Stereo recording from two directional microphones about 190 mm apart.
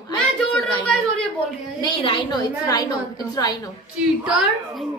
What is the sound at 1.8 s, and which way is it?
A woman's voice, 25° left (ahead or behind).